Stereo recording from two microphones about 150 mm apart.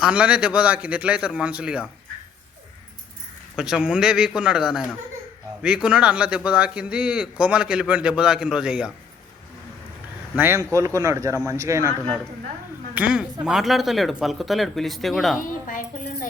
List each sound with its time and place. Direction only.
0.0 s a man's voice: 5° right (ahead or behind)
3.5 s a man's voice: 5° right (ahead or behind)
10.3 s a man's voice: 15° right (ahead or behind)
12.9 s a man's voice: 10° right (ahead or behind)
15.4 s a woman's voice: 60° left (ahead or behind)